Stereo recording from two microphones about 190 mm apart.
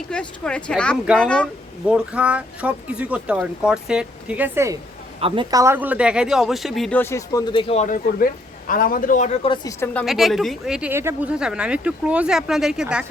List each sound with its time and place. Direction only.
0.1 s a woman's voice: 5° left (ahead or behind)
1.9 s speech: 5° right (ahead or behind)
5.2 s a woman's voice: 25° right (ahead or behind); by 7.0 s centre (ahead or behind)
7.0 s a man's voice: 15° left (ahead or behind); by 9.6 s 35° left (ahead or behind)
9.6 s a woman's voice: 10° left (ahead or behind)